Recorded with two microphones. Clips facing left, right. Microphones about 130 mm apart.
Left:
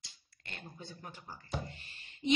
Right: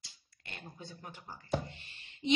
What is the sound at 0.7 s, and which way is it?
Speech, 10° right (ahead or behind).